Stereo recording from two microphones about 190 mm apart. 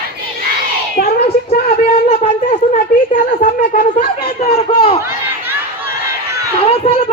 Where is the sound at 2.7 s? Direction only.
40° left (ahead or behind).